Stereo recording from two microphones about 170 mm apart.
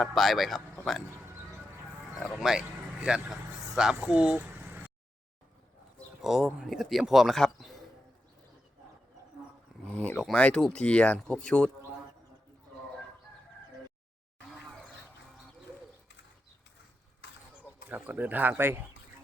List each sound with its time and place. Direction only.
0.0 s speech: centre (ahead or behind)
2.1 s speech: centre (ahead or behind)
6.2 s speech: 5° right (ahead or behind)
9.8 s speech: 5° left (ahead or behind)
17.2 s a sound: 80° left
17.8 s speech: 10° right (ahead or behind)